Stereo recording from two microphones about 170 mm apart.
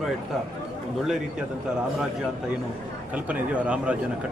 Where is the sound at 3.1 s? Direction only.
10° right (ahead or behind).